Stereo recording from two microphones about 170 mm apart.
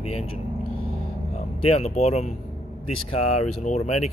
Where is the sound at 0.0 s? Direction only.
40° left (ahead or behind).